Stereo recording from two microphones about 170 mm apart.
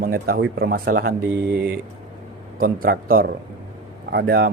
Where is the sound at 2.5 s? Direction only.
60° right (ahead or behind).